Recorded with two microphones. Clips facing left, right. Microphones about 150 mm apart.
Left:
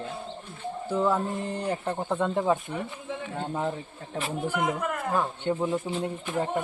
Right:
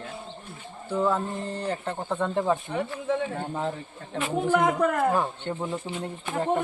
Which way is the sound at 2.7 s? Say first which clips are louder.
Right 6 dB; 80° right.